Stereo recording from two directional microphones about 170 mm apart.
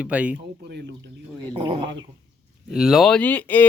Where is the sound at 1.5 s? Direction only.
30° right (ahead or behind).